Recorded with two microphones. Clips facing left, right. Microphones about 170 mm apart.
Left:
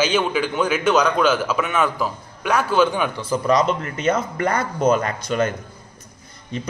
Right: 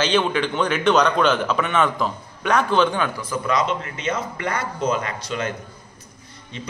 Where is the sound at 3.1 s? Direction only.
35° left (ahead or behind).